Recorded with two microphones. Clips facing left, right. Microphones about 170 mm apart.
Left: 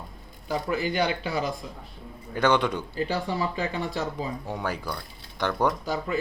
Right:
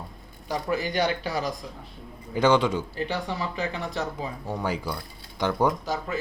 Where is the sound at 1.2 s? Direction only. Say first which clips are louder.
Even; 40° right (ahead or behind).